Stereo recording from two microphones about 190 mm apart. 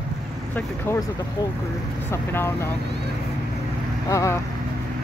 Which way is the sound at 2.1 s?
10° left (ahead or behind).